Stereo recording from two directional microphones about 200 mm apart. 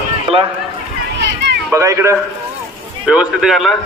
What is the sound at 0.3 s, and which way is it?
Speech, 30° right (ahead or behind).